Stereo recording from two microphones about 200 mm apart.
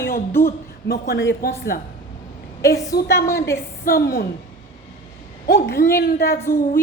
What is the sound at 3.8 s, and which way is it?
Speech, 45° left (ahead or behind).